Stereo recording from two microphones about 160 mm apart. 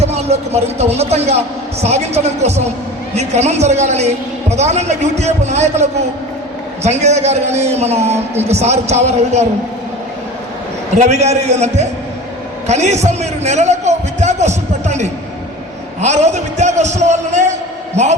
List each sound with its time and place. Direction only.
0.0 s a man's voice: 40° right (ahead or behind)
10.9 s a man's voice: 45° right (ahead or behind)